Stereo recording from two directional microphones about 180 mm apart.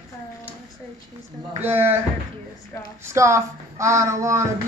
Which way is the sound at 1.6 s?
10° right (ahead or behind).